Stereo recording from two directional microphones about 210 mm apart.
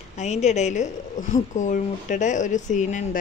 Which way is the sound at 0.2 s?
35° left (ahead or behind).